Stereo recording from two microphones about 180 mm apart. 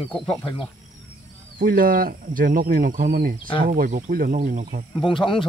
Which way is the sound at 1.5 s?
50° right (ahead or behind).